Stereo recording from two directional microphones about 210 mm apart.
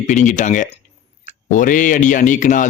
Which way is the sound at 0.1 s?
35° left (ahead or behind).